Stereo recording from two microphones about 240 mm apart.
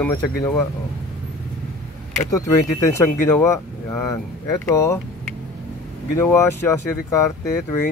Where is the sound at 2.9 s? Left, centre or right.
Centre.